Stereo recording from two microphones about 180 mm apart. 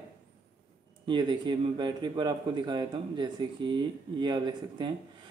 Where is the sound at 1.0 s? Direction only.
25° right (ahead or behind).